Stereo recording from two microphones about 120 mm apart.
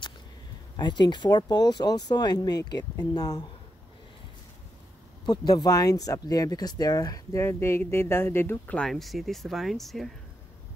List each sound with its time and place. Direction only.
0.7 s speech: 35° left (ahead or behind)
5.2 s speech: 35° left (ahead or behind); by 10.1 s centre (ahead or behind)